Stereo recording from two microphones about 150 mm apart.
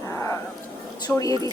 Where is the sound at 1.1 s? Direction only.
10° left (ahead or behind).